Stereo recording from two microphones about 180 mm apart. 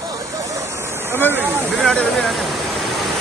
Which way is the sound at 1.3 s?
10° right (ahead or behind).